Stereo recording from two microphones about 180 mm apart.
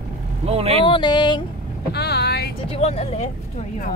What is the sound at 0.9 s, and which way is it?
Speech, 25° left (ahead or behind).